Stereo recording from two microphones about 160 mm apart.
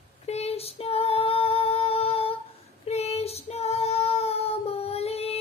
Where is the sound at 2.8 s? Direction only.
40° left (ahead or behind).